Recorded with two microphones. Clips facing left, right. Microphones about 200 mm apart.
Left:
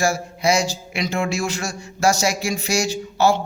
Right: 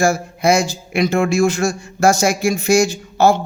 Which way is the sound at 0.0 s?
55° right (ahead or behind).